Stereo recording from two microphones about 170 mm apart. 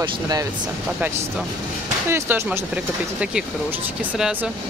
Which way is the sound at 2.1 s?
15° right (ahead or behind).